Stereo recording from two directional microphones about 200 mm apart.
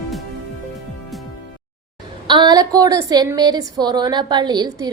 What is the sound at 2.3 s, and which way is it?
A woman's voice, 20° right (ahead or behind).